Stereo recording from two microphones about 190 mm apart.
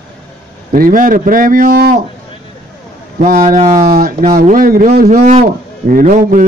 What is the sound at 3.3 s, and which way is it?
Speech, 45° right (ahead or behind).